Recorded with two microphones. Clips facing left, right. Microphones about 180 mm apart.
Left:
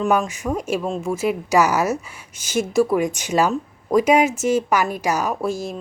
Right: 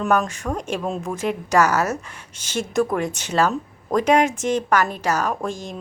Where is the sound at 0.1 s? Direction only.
10° left (ahead or behind).